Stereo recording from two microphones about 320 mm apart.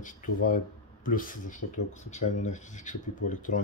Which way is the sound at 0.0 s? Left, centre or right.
Left.